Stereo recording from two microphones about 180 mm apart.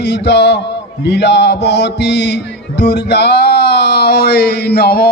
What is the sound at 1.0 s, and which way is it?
Mantra, 70° left (ahead or behind).